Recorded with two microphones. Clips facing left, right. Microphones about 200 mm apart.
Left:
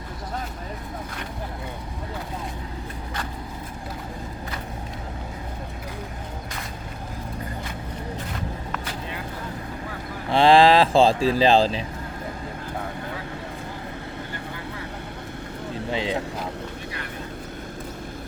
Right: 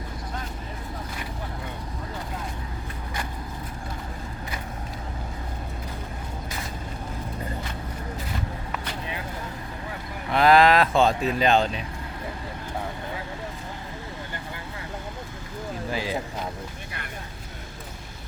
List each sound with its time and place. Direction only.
10.2 s speech: 30° left (ahead or behind)
15.9 s vehicle: 25° left (ahead or behind)